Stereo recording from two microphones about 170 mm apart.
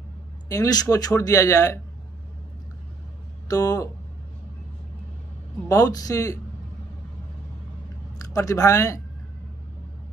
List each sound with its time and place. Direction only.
0.5 s speech: 20° left (ahead or behind)
3.4 s speech: 20° left (ahead or behind)
5.7 s speech: 20° left (ahead or behind)
8.2 s speech: 20° left (ahead or behind)